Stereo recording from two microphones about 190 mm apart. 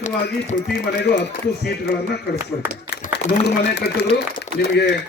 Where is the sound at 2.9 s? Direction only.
60° left (ahead or behind).